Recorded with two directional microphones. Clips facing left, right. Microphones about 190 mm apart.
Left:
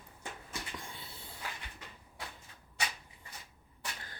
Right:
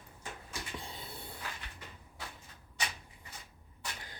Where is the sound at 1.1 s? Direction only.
60° right (ahead or behind).